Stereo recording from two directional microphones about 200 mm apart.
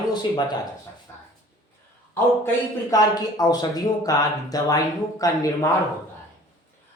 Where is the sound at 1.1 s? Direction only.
10° left (ahead or behind).